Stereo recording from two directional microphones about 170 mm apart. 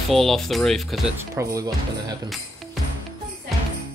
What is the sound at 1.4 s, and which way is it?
Speech, 20° right (ahead or behind).